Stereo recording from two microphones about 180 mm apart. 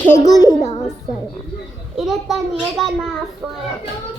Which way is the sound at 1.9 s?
Centre (ahead or behind).